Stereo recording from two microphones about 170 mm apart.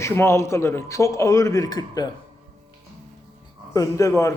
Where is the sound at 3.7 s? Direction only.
20° left (ahead or behind).